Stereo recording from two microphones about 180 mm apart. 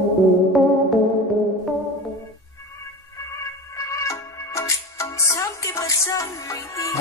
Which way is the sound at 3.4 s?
15° left (ahead or behind).